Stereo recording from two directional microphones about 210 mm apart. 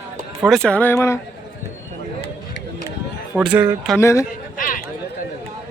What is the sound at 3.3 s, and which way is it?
Speech, 5° right (ahead or behind).